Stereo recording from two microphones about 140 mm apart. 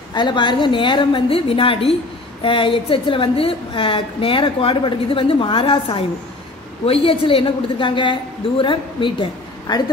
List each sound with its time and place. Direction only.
0.1 s a woman's voice: 35° left (ahead or behind)